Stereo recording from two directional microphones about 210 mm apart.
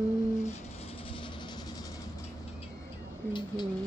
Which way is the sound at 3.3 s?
20° left (ahead or behind).